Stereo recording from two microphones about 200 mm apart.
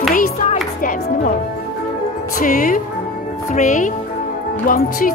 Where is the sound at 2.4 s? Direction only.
40° left (ahead or behind).